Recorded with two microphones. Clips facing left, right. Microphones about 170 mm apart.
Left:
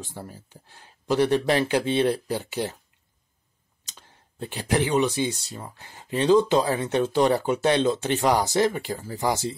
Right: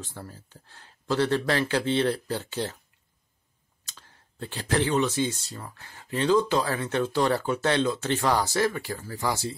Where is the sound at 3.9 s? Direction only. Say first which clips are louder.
Left 2 dB; 15° left (ahead or behind).